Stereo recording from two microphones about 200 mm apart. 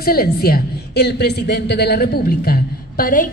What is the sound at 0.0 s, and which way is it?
A woman's voice, 50° left (ahead or behind).